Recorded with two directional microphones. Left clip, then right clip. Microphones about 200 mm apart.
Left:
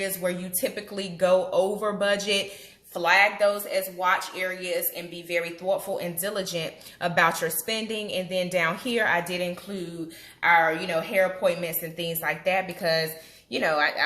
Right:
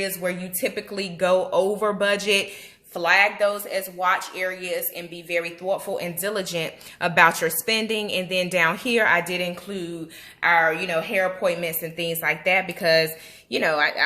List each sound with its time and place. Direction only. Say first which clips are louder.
0.0 s speech: right 2 dB; 30° right (ahead or behind)